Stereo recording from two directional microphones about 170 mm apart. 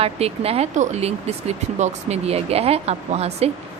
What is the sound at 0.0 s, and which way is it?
Speech, 35° right (ahead or behind).